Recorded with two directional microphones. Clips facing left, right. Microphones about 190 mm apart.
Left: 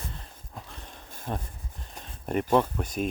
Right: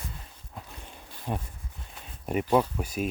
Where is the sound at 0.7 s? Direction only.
10° right (ahead or behind).